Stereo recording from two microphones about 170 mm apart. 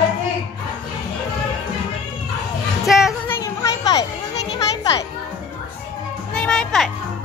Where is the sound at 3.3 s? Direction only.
20° left (ahead or behind).